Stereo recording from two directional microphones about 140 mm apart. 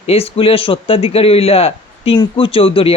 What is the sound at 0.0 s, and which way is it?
Speech, 45° left (ahead or behind).